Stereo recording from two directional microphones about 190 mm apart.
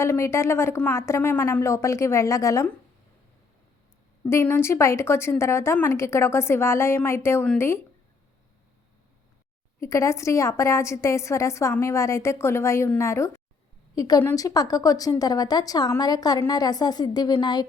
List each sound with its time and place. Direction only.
0.0 s a woman's voice: 15° left (ahead or behind)
4.3 s a woman's voice: 15° left (ahead or behind)
9.8 s a woman's voice: 15° left (ahead or behind)